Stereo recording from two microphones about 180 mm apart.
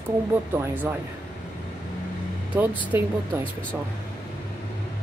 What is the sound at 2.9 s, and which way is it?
Speech, 10° right (ahead or behind).